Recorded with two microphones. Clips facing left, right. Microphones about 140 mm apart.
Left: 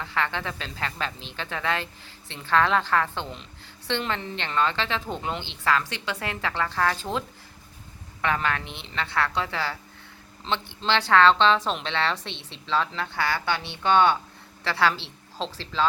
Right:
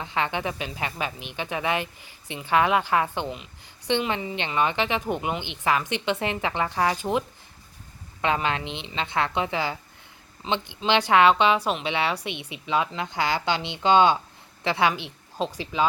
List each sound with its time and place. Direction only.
0.0 s a woman's voice: 20° right (ahead or behind)